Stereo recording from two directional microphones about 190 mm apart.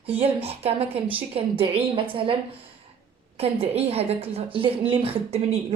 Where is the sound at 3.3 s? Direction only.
30° right (ahead or behind).